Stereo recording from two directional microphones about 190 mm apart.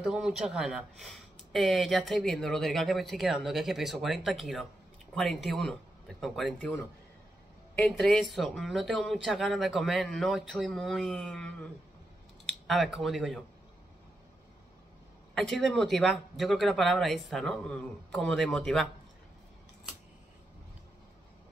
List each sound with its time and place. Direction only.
0.0 s speech: 5° right (ahead or behind)
7.9 s speech: centre (ahead or behind)
15.3 s speech: centre (ahead or behind)